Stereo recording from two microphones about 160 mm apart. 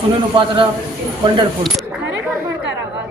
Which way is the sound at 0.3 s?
30° right (ahead or behind).